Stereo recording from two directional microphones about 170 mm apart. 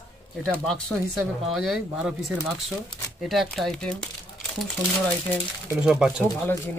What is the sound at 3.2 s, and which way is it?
Speech, centre (ahead or behind).